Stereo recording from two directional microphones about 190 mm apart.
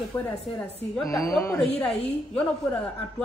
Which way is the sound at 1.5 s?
5° left (ahead or behind).